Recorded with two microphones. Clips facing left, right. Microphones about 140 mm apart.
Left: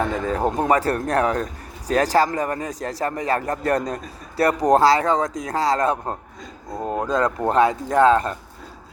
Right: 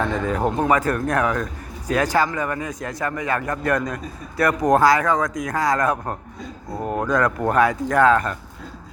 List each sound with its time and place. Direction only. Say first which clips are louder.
0.6 s speech: even; 35° left (ahead or behind)
6.7 s speech: even; 5° right (ahead or behind)
6.9 s speech: right 1 dB; 20° left (ahead or behind)